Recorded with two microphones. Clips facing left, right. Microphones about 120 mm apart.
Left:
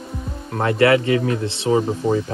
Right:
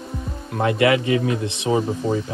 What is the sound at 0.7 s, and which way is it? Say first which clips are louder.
A man's voice: left 3 dB; 20° right (ahead or behind).